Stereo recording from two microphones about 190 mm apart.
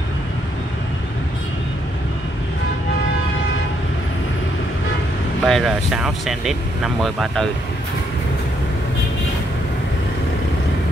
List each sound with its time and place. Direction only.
5.4 s speech: centre (ahead or behind)